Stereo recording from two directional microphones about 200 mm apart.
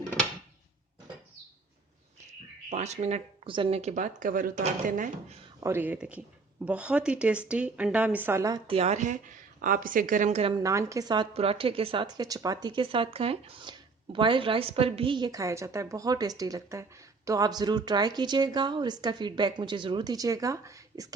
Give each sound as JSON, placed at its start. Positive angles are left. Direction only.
{"t": 2.6, "sound": "speech", "side_deg": -35}
{"t": 5.5, "sound": "speech", "side_deg": -15}
{"t": 10.5, "sound": "a woman's voice", "side_deg": -15}